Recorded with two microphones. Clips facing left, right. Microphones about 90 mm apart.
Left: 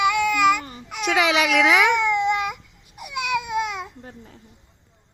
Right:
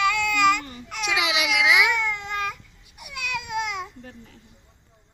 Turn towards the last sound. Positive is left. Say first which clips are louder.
# left 2 dB
turn(degrees=35)  # may be behind; listen again after turning